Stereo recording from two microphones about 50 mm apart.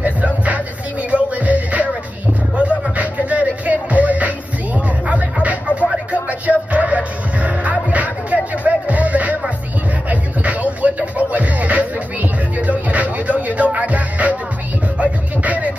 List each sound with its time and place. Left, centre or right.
0.0 s vehicle: right
1.1 s music: right